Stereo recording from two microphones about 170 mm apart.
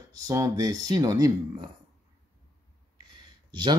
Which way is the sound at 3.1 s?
25° right (ahead or behind).